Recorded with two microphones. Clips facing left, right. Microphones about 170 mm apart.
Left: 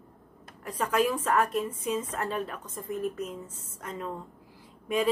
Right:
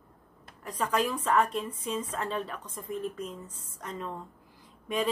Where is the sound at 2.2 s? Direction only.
10° left (ahead or behind).